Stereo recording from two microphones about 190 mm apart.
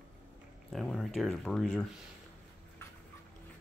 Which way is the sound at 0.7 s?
Centre (ahead or behind).